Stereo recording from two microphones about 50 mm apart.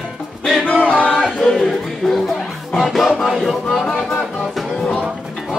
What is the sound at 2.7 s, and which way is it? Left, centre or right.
Music, centre.